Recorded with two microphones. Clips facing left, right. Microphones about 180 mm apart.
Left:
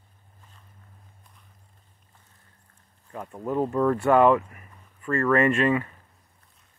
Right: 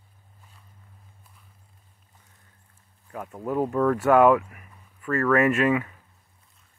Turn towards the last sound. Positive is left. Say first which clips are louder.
# even
turn(degrees=-5)  # may be behind; listen again after turning